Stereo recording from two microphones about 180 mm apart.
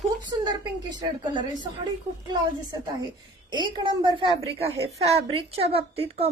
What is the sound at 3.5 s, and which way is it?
A woman's voice, 25° right (ahead or behind).